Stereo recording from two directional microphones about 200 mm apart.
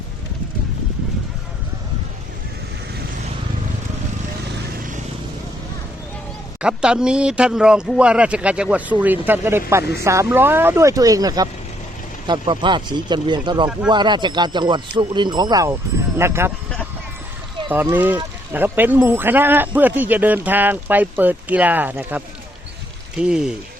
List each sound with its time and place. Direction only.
6.6 s speech: 5° right (ahead or behind)
17.9 s speech: 10° right (ahead or behind)